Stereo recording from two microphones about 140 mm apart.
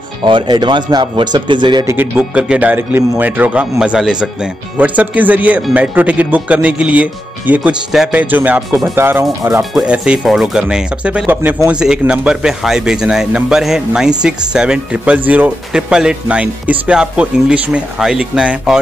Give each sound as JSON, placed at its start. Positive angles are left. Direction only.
{"t": 0.2, "sound": "speech", "side_deg": -35}
{"t": 1.9, "sound": "speech", "side_deg": -10}
{"t": 9.6, "sound": "speech", "side_deg": -5}